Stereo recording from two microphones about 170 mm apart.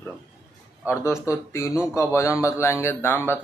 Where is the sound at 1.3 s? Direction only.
15° left (ahead or behind).